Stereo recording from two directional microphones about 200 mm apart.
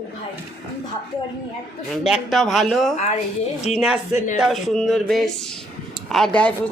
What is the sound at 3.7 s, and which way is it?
Speech, 35° left (ahead or behind).